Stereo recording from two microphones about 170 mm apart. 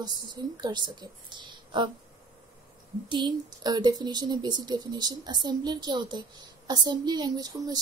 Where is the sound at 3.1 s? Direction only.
25° right (ahead or behind).